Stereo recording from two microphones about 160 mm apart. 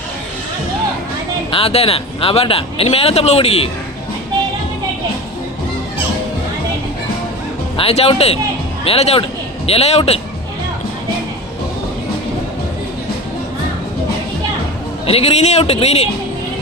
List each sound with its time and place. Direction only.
1.5 s speech: 35° left (ahead or behind)
7.8 s speech: 40° left (ahead or behind)
15.0 s speech: 40° left (ahead or behind)